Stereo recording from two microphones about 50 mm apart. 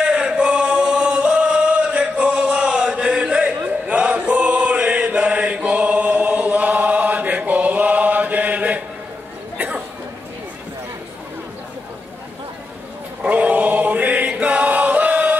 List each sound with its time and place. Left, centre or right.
0.0 s choir: centre
3.6 s chant: right
13.2 s chant: right